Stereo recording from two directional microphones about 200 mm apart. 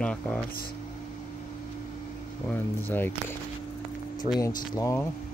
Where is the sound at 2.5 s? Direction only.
10° left (ahead or behind).